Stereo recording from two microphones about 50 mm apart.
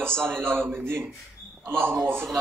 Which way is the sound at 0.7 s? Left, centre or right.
Right.